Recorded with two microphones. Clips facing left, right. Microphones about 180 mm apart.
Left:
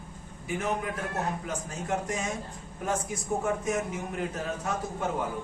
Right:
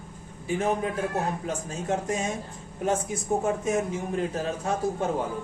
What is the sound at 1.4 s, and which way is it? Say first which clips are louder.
A man's voice: right 4 dB; 25° right (ahead or behind).